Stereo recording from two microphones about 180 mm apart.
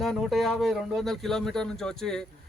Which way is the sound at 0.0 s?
Centre (ahead or behind).